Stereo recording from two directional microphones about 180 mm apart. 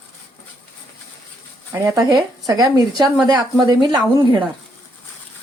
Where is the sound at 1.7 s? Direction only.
15° right (ahead or behind).